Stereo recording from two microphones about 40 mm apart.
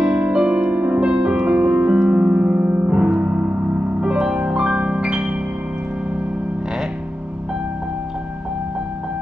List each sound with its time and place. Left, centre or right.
0.2 s music: right
1.2 s music: right
2.8 s music: right